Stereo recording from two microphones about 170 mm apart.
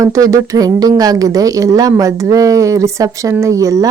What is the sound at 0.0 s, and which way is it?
A woman's voice, 20° right (ahead or behind).